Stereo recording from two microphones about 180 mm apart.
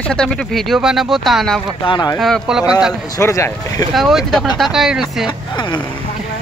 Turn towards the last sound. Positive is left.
turn(degrees=0)  # may be behind; listen again after turning